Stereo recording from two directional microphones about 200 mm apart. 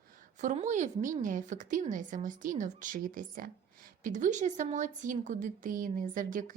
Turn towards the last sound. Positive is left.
turn(degrees=-40)  # may be behind; listen again after turning